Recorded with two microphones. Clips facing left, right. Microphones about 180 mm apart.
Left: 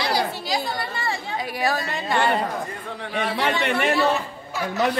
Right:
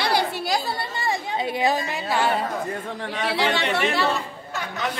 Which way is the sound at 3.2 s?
75° right (ahead or behind).